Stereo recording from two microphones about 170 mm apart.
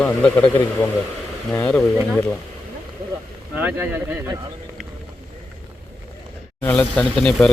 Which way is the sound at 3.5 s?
10° right (ahead or behind).